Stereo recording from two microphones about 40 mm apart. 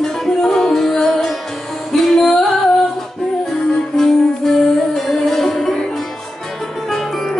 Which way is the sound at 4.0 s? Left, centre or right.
Centre.